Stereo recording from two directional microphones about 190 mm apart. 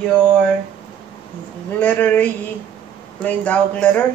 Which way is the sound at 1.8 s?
10° left (ahead or behind).